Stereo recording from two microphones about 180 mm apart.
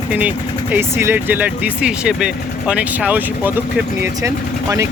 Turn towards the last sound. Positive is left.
turn(degrees=-15)  # may be behind; listen again after turning